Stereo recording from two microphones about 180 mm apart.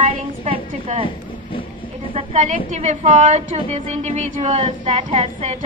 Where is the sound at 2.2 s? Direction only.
40° right (ahead or behind).